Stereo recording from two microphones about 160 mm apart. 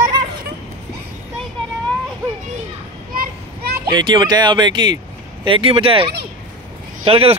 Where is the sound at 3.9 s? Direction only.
30° right (ahead or behind).